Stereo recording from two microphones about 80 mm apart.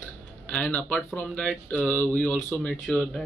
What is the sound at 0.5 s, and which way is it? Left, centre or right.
Speech, centre.